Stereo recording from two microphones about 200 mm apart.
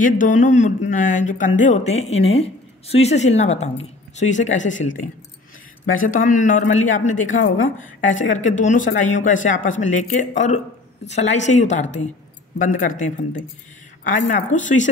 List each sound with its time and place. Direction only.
0.0 s speech: 40° left (ahead or behind)
5.9 s speech: 40° left (ahead or behind)
7.2 s a woman's voice: 80° left
8.1 s speech: 40° left (ahead or behind)
14.0 s speech: 40° left (ahead or behind)